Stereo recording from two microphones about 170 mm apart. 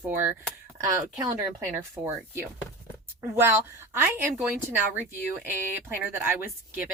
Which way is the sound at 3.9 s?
10° right (ahead or behind).